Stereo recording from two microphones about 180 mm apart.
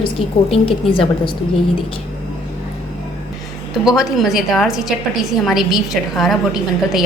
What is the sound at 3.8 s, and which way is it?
A woman's voice, centre (ahead or behind).